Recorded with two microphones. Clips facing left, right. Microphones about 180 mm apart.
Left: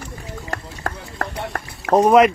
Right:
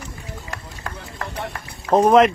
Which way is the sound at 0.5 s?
50° left (ahead or behind).